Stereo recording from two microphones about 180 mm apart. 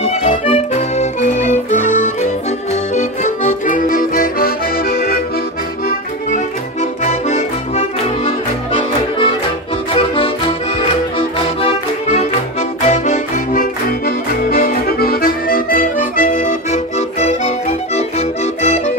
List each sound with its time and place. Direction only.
0.0 s accordion: 35° left (ahead or behind); by 5.2 s 60° left (ahead or behind)
5.9 s accordion: 45° left (ahead or behind)
8.3 s music: 30° left (ahead or behind)
12.8 s accordion: 40° left (ahead or behind)